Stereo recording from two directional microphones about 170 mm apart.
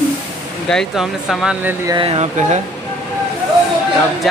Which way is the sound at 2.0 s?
35° right (ahead or behind).